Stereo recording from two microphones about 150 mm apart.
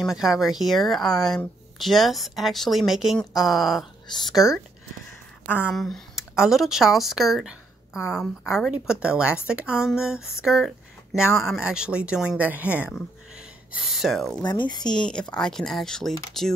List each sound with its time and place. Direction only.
0.0 s speech: 5° right (ahead or behind)
14.4 s speech: 30° left (ahead or behind)
14.8 s speech: 5° left (ahead or behind)